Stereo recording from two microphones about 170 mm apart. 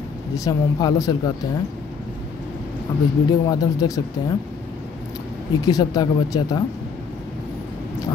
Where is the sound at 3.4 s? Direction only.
20° left (ahead or behind).